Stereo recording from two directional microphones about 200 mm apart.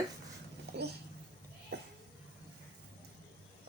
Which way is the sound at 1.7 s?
55° right (ahead or behind).